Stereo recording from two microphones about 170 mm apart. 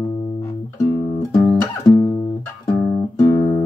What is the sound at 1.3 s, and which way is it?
Music, 25° left (ahead or behind).